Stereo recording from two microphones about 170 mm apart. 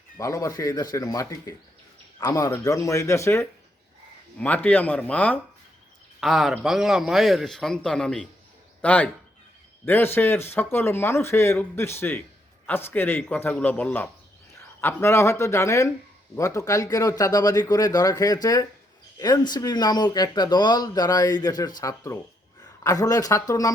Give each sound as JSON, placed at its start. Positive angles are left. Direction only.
{"t": 0.2, "sound": "a man's voice", "side_deg": 20}